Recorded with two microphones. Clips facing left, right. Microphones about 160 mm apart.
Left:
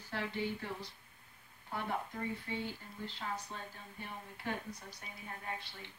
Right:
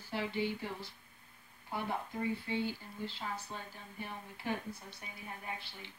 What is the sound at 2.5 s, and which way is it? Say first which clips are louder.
Speech: right 5 dB; 20° right (ahead or behind).